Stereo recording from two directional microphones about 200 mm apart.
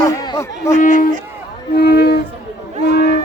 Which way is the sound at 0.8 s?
40° left (ahead or behind).